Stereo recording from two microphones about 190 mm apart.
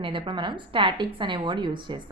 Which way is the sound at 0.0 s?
25° right (ahead or behind).